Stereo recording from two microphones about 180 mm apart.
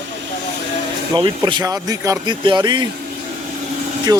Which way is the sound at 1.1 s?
25° right (ahead or behind).